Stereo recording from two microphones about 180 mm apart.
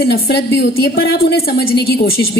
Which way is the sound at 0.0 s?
60° left (ahead or behind).